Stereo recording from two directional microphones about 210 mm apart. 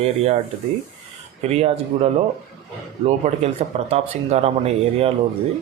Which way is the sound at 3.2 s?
30° right (ahead or behind).